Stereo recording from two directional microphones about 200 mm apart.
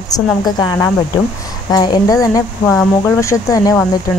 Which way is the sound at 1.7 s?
20° left (ahead or behind).